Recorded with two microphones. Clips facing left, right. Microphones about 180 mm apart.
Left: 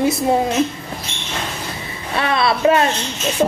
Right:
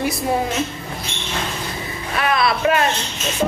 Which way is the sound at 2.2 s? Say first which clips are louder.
Left 2 dB; 25° left (ahead or behind).